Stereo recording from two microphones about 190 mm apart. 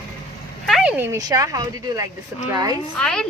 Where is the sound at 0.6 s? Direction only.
5° right (ahead or behind); by 2.8 s 20° right (ahead or behind).